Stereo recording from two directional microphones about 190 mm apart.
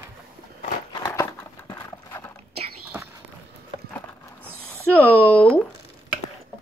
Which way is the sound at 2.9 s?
10° right (ahead or behind).